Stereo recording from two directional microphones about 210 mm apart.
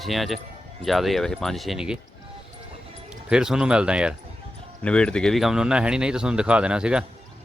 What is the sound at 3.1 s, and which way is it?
Speech, 5° right (ahead or behind).